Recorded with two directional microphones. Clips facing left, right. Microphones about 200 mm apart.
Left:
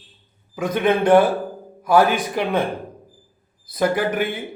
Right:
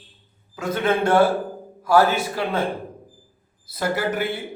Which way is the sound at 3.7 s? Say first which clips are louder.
Left 4 dB; 20° left (ahead or behind).